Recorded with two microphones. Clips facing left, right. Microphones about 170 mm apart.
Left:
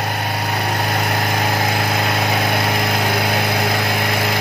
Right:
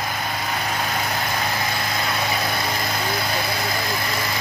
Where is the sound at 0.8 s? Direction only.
65° left (ahead or behind).